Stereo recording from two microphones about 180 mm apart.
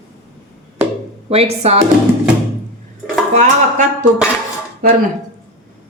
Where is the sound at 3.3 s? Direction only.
40° right (ahead or behind).